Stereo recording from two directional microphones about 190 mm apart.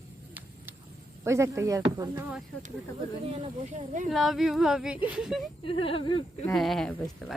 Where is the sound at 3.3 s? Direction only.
40° right (ahead or behind).